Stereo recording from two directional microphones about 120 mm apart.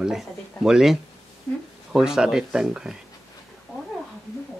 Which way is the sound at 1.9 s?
5° right (ahead or behind).